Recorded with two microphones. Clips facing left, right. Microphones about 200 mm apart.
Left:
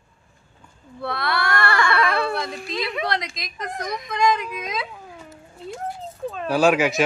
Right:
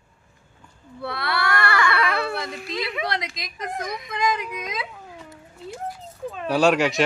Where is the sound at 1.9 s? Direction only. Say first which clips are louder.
Left 2 dB; 40° left (ahead or behind).